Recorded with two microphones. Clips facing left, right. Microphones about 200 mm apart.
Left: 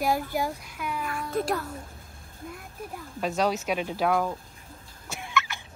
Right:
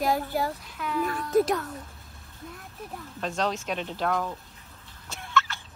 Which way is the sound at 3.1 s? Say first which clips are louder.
Left 3 dB; 10° left (ahead or behind).